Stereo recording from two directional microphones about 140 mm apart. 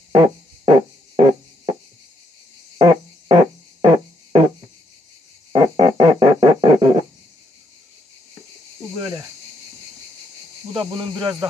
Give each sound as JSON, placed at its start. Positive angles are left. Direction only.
{"t": 0.1, "sound": "music", "side_deg": -40}
{"t": 2.8, "sound": "music", "side_deg": -35}
{"t": 5.5, "sound": "a sound", "side_deg": -35}
{"t": 10.7, "sound": "cricket", "side_deg": -35}